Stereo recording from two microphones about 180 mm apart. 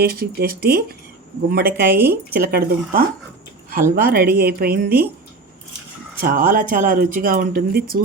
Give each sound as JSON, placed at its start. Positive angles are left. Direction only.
{"t": 0.0, "sound": "speech", "side_deg": -60}
{"t": 6.1, "sound": "speech", "side_deg": -50}